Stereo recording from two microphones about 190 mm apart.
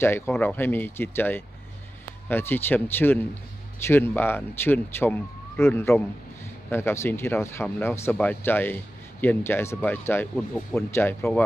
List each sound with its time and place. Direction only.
0.0 s speech: 10° left (ahead or behind)